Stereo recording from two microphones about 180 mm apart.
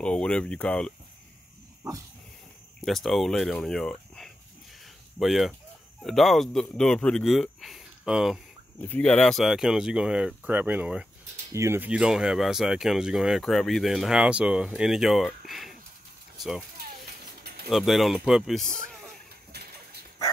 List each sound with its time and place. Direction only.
0.0 s speech: 5° left (ahead or behind)
2.8 s speech: centre (ahead or behind)
8.8 s speech: 10° left (ahead or behind)
16.4 s a sound: centre (ahead or behind)
17.4 s bird: 60° right (ahead or behind)
17.6 s speech: centre (ahead or behind)